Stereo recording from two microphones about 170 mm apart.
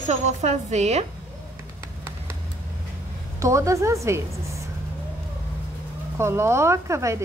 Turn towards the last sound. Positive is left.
turn(degrees=-15)  # may be behind; listen again after turning